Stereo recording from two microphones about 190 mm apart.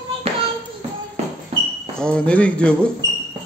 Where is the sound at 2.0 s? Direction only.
5° left (ahead or behind).